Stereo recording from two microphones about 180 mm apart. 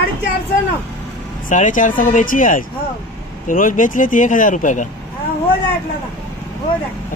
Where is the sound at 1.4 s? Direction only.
45° left (ahead or behind).